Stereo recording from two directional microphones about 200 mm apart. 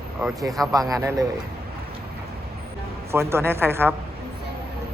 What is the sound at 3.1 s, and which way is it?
Speech, 10° right (ahead or behind).